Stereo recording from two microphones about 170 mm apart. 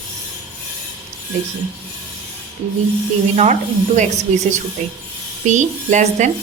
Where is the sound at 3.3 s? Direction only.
40° right (ahead or behind).